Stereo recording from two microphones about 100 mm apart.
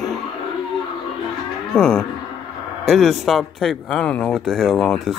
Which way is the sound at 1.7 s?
5° left (ahead or behind).